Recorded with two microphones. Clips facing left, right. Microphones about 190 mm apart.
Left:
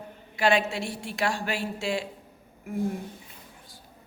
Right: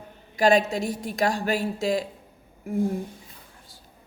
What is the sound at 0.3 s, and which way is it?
A woman's voice, 40° right (ahead or behind).